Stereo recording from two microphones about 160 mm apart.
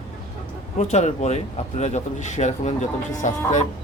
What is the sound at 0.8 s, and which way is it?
Speech, 45° left (ahead or behind).